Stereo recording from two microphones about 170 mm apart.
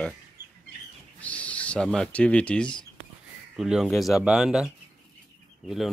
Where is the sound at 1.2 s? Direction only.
10° left (ahead or behind).